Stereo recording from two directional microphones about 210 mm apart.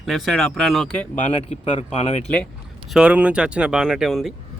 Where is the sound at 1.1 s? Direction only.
30° left (ahead or behind).